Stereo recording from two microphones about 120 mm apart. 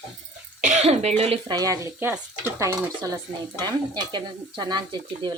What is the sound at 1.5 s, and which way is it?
Speech, 30° right (ahead or behind).